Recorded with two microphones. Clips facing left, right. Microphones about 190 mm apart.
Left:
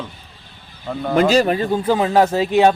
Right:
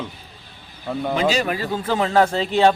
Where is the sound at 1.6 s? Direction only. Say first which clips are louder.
Left 5 dB; 15° left (ahead or behind).